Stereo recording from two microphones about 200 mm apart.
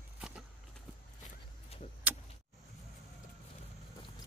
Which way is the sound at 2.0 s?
10° right (ahead or behind).